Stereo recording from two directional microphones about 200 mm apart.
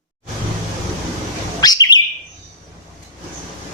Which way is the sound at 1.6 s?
20° left (ahead or behind).